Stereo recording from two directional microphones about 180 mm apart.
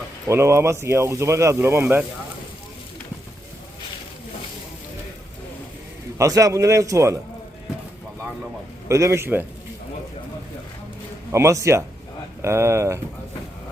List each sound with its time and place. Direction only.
0.3 s speech: 15° right (ahead or behind)
6.1 s speech: 20° right (ahead or behind)
8.9 s speech: 15° right (ahead or behind)
11.3 s speech: 15° right (ahead or behind)